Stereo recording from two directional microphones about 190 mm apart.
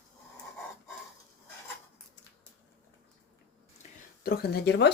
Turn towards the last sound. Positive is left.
turn(degrees=60)  # may be behind; listen again after turning